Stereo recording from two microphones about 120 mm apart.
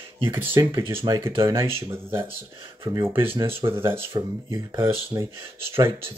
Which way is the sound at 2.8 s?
20° right (ahead or behind).